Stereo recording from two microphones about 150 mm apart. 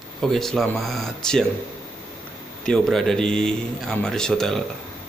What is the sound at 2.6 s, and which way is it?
Speech, 5° left (ahead or behind).